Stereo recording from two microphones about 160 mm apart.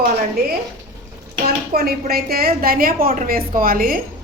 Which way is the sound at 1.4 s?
75° right (ahead or behind).